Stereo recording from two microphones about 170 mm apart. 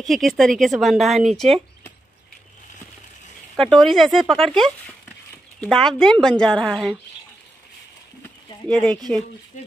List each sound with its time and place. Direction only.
0.0 s speech: centre (ahead or behind)
3.5 s speech: 5° left (ahead or behind)
8.6 s speech: 5° left (ahead or behind)
9.5 s speech: 45° left (ahead or behind)